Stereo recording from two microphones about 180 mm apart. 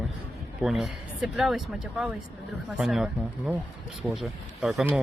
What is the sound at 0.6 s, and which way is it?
Speech, centre (ahead or behind).